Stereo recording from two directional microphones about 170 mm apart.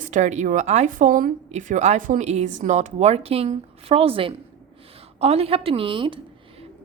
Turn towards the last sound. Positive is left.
turn(degrees=-30)  # may be behind; listen again after turning